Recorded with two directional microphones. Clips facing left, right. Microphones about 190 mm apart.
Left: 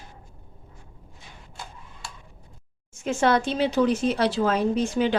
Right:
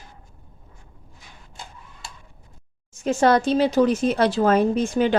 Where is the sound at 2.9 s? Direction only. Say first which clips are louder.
Right 4 dB; 40° right (ahead or behind).